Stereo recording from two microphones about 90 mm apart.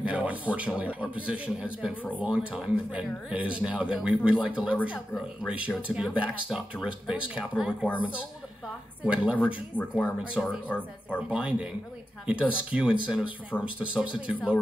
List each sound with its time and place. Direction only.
0.0 s speech: 15° right (ahead or behind)
9.8 s speech: 20° left (ahead or behind)
10.4 s speech: 5° right (ahead or behind)
10.7 s speech: 20° left (ahead or behind)
11.1 s speech: 15° right (ahead or behind)